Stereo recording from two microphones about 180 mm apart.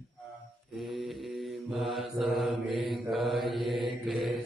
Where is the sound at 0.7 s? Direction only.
Centre (ahead or behind).